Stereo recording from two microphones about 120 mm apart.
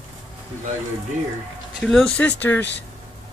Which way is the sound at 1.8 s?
5° left (ahead or behind).